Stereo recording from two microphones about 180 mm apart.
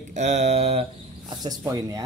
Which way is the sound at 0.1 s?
40° right (ahead or behind).